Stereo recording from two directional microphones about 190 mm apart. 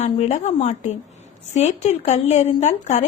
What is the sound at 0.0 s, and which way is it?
A woman's voice, 35° left (ahead or behind).